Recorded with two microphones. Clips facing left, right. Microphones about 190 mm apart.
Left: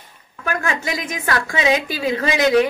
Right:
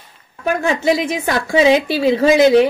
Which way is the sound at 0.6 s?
30° right (ahead or behind).